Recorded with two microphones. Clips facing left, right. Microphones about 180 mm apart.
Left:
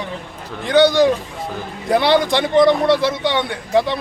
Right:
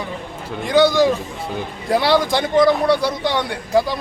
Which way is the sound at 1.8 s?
Centre (ahead or behind).